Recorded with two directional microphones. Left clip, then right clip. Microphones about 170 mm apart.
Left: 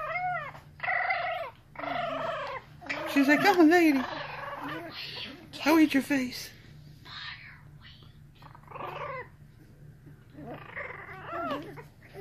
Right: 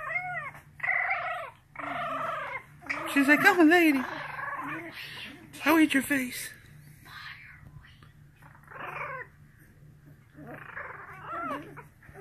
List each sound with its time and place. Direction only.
0.1 s cat: centre (ahead or behind)
1.4 s dog: 15° left (ahead or behind)
2.8 s gargling: 10° left (ahead or behind)
5.6 s speech: 10° left (ahead or behind)
8.8 s cat: 10° left (ahead or behind)
10.5 s dog: 30° left (ahead or behind)
11.2 s dog: 20° left (ahead or behind)